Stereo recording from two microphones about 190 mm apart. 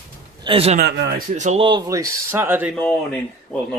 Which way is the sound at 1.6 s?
20° right (ahead or behind).